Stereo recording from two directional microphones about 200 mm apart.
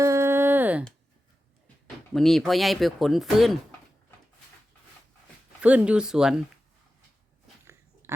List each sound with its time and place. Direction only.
0.0 s a sound: 15° right (ahead or behind)
2.1 s speech: centre (ahead or behind)
5.6 s speech: 5° right (ahead or behind)